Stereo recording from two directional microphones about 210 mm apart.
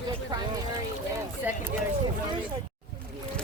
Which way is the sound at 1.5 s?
5° right (ahead or behind).